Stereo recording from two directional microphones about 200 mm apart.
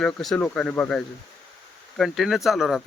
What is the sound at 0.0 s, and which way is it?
Speech, centre (ahead or behind).